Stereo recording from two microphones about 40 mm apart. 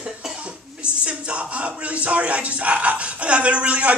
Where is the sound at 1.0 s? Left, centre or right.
Right.